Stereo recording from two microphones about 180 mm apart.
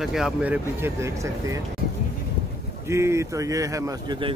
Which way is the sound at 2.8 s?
15° right (ahead or behind).